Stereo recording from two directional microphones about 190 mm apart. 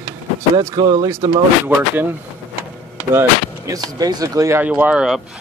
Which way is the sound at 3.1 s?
15° right (ahead or behind).